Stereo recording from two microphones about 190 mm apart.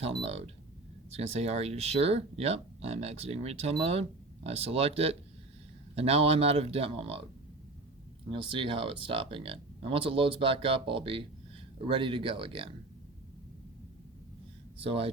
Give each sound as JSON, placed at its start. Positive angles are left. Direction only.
{"t": 0.0, "sound": "speech", "side_deg": -30}
{"t": 8.3, "sound": "speech", "side_deg": -25}
{"t": 14.8, "sound": "speech", "side_deg": -30}